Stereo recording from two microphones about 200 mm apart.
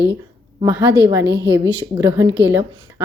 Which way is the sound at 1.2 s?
60° right (ahead or behind).